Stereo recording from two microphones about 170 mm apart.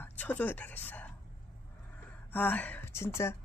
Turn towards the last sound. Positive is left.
turn(degrees=15)  # may be behind; listen again after turning